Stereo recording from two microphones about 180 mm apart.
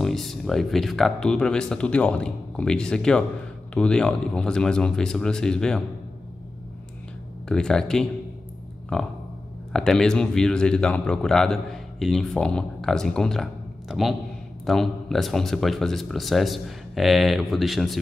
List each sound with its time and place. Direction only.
0.0 s speech: centre (ahead or behind)
7.4 s speech: 5° left (ahead or behind)